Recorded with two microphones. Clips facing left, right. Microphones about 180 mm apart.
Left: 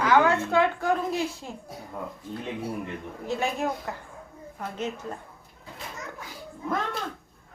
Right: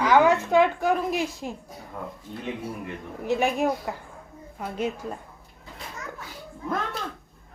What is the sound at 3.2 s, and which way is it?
Speech, 15° right (ahead or behind).